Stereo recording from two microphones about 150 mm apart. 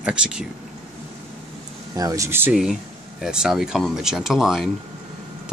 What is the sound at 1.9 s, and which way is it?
Speech, 20° right (ahead or behind).